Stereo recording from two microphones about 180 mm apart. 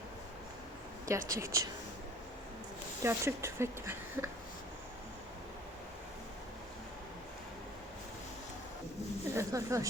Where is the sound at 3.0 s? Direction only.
15° right (ahead or behind).